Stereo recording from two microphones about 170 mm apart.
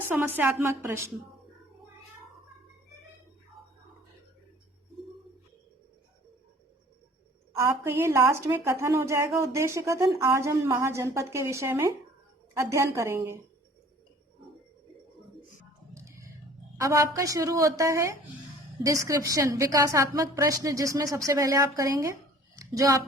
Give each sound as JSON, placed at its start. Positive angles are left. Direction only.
{"t": 0.3, "sound": "a woman's voice", "side_deg": -15}
{"t": 7.6, "sound": "a woman's voice", "side_deg": -15}
{"t": 16.0, "sound": "a sound", "side_deg": -15}
{"t": 16.7, "sound": "a woman's voice", "side_deg": -20}